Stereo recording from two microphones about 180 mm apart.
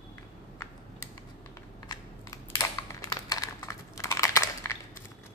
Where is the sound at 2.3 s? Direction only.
20° left (ahead or behind).